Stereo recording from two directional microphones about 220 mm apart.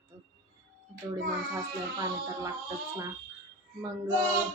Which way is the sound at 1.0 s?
15° right (ahead or behind).